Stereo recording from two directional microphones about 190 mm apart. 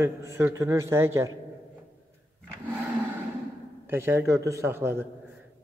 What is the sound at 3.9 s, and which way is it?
A man's voice, 10° right (ahead or behind).